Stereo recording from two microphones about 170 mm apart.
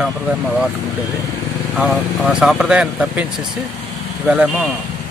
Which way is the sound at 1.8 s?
Centre (ahead or behind).